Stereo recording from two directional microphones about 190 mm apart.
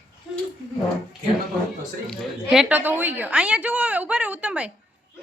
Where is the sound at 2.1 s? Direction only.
Centre (ahead or behind).